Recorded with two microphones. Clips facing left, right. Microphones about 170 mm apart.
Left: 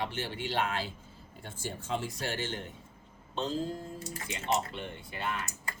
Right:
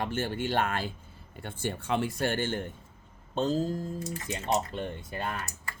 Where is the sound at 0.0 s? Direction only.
50° right (ahead or behind).